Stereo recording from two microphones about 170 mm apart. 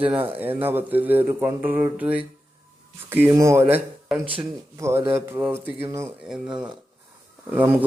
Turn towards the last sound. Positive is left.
turn(degrees=-10)  # may be behind; listen again after turning